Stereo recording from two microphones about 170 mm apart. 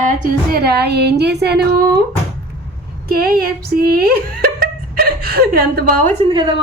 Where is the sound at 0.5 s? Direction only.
70° right (ahead or behind).